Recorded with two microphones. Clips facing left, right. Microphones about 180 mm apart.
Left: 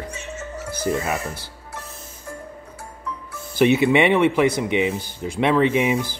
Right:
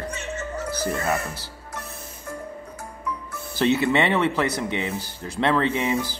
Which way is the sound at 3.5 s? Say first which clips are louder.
Left 4 dB; 15° left (ahead or behind).